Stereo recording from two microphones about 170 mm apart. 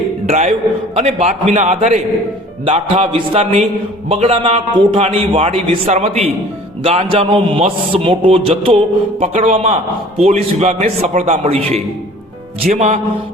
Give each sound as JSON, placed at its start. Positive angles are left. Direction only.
{"t": 0.3, "sound": "a man's voice", "side_deg": -40}